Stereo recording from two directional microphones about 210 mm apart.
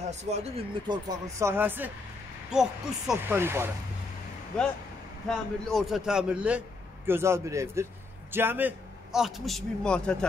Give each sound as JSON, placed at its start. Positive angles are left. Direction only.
{"t": 0.0, "sound": "speech", "side_deg": -30}
{"t": 1.2, "sound": "speech", "side_deg": -10}
{"t": 4.5, "sound": "a man's voice", "side_deg": 5}